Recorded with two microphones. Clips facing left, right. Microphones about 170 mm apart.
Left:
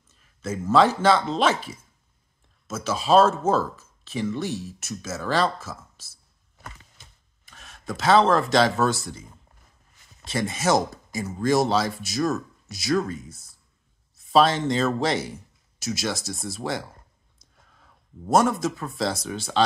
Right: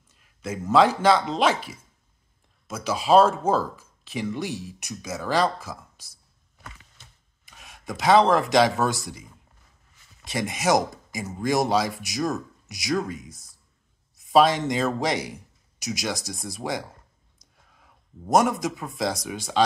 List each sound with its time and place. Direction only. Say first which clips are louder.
0.4 s speech: even; 15° right (ahead or behind)
7.4 s speech: left 2 dB; 15° right (ahead or behind)
10.2 s speech: even; 15° right (ahead or behind)